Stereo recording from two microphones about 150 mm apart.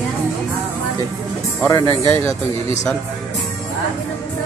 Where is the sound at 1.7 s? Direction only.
20° left (ahead or behind).